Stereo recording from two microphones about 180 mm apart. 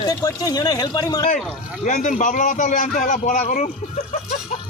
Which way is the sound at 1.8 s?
45° left (ahead or behind).